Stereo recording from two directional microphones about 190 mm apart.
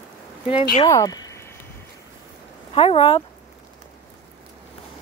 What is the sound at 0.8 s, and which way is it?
Speech, 15° left (ahead or behind).